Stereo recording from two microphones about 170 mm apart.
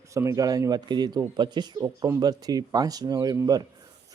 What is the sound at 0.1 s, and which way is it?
Speech, 15° right (ahead or behind).